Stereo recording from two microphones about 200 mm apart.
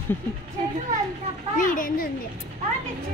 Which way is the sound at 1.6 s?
45° left (ahead or behind).